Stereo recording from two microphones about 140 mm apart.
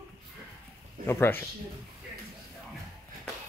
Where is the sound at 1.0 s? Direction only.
15° left (ahead or behind).